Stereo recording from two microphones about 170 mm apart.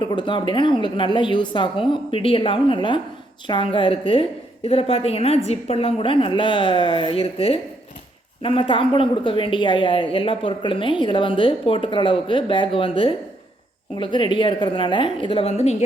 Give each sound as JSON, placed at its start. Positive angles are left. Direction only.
{"t": 0.0, "sound": "a woman's voice", "side_deg": 25}